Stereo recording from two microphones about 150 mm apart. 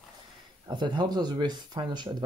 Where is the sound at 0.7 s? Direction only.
30° right (ahead or behind).